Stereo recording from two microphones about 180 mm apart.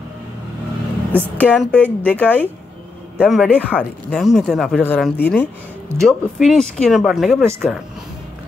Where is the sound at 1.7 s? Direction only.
10° left (ahead or behind).